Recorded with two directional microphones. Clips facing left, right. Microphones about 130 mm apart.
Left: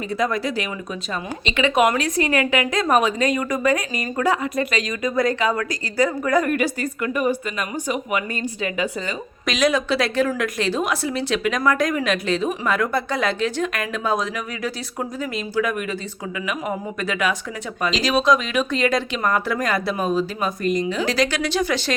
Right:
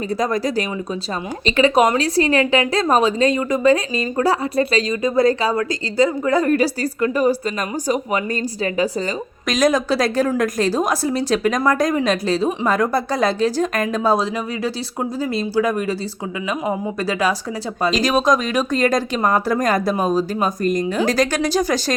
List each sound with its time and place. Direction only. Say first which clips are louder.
0.1 s a woman's voice: right 2 dB; 40° right (ahead or behind)
17.9 s a woman's voice: right 1 dB; 45° right (ahead or behind)